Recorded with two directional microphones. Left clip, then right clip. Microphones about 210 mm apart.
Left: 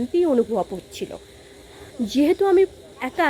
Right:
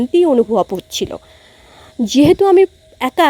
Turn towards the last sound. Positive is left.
turn(degrees=-45)  # may be behind; listen again after turning